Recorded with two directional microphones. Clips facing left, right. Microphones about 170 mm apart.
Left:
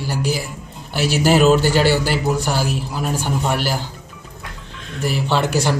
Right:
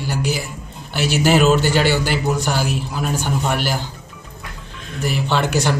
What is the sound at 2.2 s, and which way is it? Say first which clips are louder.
A man's voice: even; 10° left (ahead or behind).